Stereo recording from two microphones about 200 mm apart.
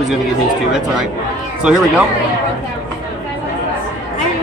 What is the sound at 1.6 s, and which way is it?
Speech, 5° right (ahead or behind).